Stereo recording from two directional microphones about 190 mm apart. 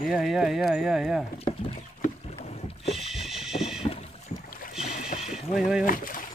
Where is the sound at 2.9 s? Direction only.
Centre (ahead or behind).